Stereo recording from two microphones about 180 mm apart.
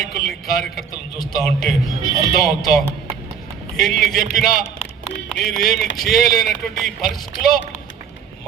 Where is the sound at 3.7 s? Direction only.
Centre (ahead or behind).